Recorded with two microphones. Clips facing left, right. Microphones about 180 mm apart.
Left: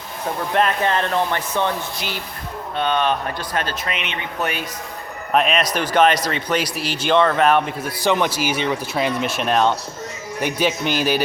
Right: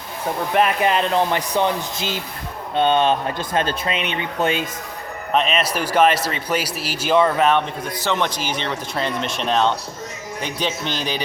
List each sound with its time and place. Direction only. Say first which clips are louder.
0.5 s speech: right 1 dB; 10° right (ahead or behind)
5.3 s a man's voice: left 1 dB; centre (ahead or behind)